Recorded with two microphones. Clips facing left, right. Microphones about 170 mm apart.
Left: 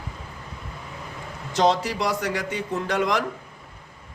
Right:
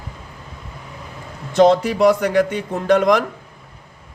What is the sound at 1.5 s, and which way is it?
A man's voice, 55° right (ahead or behind).